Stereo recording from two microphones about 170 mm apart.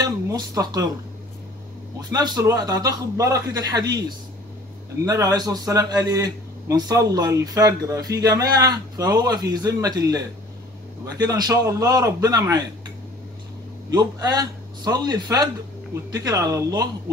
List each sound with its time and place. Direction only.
0.0 s a sound: 20° right (ahead or behind)
2.0 s a man's voice: 25° right (ahead or behind)
5.0 s a man's voice: 20° right (ahead or behind)
13.9 s a man's voice: 20° right (ahead or behind)